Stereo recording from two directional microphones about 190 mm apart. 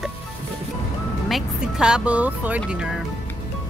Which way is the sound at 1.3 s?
5° right (ahead or behind).